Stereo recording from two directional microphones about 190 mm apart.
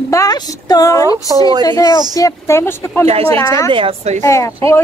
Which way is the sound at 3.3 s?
15° left (ahead or behind).